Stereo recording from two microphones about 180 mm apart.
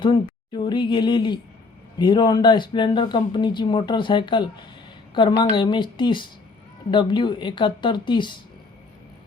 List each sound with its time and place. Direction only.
0.0 s speech: 25° left (ahead or behind)